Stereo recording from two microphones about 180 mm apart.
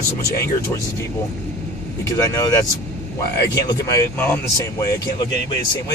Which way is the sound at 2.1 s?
20° left (ahead or behind).